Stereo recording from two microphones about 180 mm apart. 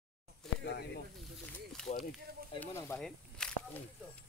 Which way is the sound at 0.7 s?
65° left (ahead or behind).